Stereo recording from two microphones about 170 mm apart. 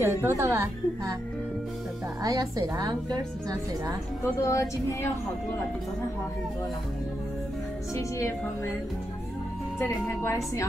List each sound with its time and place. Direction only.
0.0 s a woman's voice: 15° right (ahead or behind)
2.2 s a woman's voice: 20° right (ahead or behind)
4.4 s a woman's voice: 15° left (ahead or behind)
9.8 s a woman's voice: 15° left (ahead or behind)